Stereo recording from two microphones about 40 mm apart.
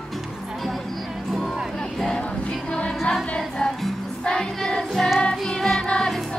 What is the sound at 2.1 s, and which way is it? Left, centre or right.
Music, left.